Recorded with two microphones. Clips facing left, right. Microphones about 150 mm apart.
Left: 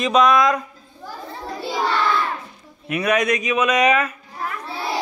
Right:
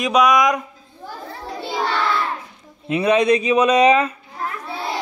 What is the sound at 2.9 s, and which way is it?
A man's voice, 25° right (ahead or behind).